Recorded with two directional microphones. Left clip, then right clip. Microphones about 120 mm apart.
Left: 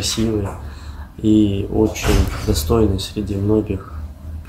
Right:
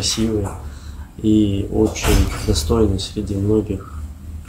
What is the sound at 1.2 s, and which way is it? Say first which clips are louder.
Speech: left 1 dB; 20° left (ahead or behind).